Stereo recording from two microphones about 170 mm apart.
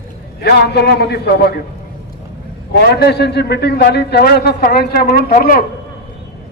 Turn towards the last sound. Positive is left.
turn(degrees=55)  # may be behind; listen again after turning